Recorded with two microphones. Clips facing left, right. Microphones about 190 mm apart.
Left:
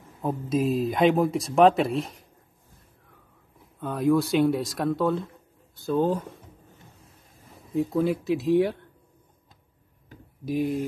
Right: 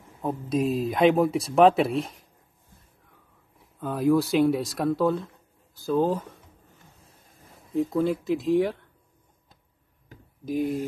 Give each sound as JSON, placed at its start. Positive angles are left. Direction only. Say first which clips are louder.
{"t": 0.2, "sound": "speech", "louder": "even", "side_deg": 0}
{"t": 3.8, "sound": "speech", "louder": "even", "side_deg": 0}
{"t": 7.7, "sound": "speech", "louder": "even", "side_deg": 0}
{"t": 10.4, "sound": "speech", "louder": "even", "side_deg": 0}